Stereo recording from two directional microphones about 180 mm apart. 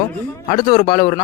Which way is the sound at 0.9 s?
45° left (ahead or behind).